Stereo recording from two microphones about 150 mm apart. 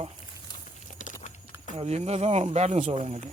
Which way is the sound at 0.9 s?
55° left (ahead or behind).